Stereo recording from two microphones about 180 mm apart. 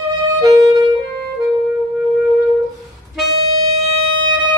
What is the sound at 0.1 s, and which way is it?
Music, 20° right (ahead or behind).